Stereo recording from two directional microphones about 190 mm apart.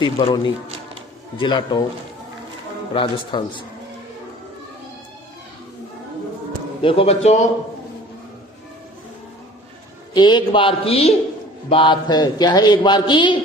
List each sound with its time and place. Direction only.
0.0 s a man's voice: 25° left (ahead or behind)
2.9 s a man's voice: 25° left (ahead or behind)
6.8 s a man's voice: 30° left (ahead or behind)
10.1 s a man's voice: 25° left (ahead or behind)